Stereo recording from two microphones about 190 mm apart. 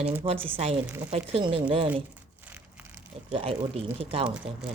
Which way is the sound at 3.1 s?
30° right (ahead or behind).